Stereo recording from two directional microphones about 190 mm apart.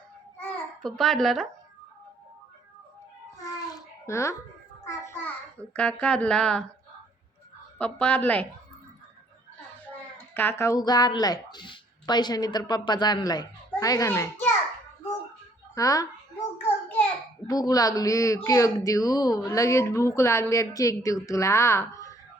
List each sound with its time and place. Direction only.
0.3 s babbling: 5° left (ahead or behind)
3.4 s babbling: 15° left (ahead or behind)
4.9 s a child's voice: 15° left (ahead or behind)
7.8 s speech: 5° left (ahead or behind)
10.3 s a woman's voice: 10° left (ahead or behind)
15.7 s speech: 20° left (ahead or behind)
17.4 s speech: 20° left (ahead or behind)